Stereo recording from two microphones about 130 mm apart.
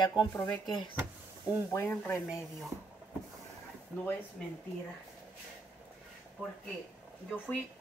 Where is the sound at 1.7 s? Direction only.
20° left (ahead or behind).